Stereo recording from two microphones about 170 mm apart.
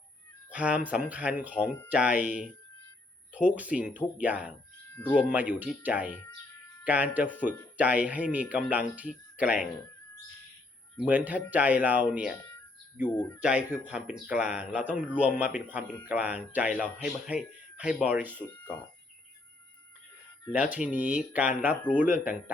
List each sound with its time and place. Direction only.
0.5 s speech: 5° right (ahead or behind)
2.2 s speech: 45° left (ahead or behind)
3.3 s speech: 10° right (ahead or behind)
4.9 s speech: 10° left (ahead or behind)
5.3 s speech: 10° right (ahead or behind)
10.9 s speech: 10° right (ahead or behind)
13.1 s speech: 15° left (ahead or behind)
13.4 s speech: 5° right (ahead or behind)
18.5 s speech: 10° left (ahead or behind)
20.5 s speech: 10° right (ahead or behind)